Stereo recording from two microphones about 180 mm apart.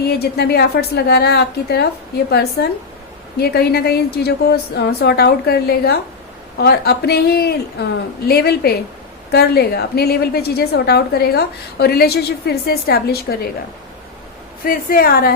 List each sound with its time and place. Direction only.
0.0 s a woman's voice: 60° left (ahead or behind)
14.6 s a woman's voice: 55° left (ahead or behind)